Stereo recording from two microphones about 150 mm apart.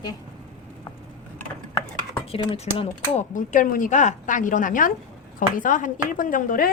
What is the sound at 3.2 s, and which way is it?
A woman's voice, 55° left (ahead or behind).